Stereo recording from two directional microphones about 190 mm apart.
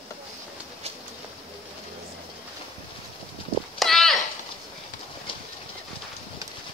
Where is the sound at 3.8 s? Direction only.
Centre (ahead or behind).